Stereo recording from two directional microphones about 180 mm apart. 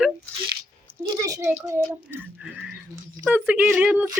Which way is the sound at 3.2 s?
5° right (ahead or behind).